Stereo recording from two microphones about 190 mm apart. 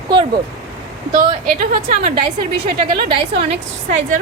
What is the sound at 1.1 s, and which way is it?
A woman's voice, 50° right (ahead or behind).